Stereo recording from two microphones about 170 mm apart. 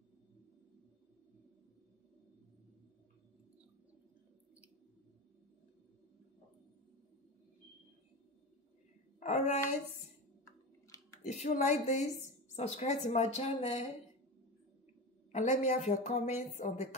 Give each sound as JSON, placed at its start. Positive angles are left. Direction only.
{"t": 9.2, "sound": "a woman's voice", "side_deg": 45}
{"t": 10.4, "sound": "a sound", "side_deg": 20}
{"t": 11.2, "sound": "a woman's voice", "side_deg": 45}
{"t": 15.3, "sound": "a woman's voice", "side_deg": 45}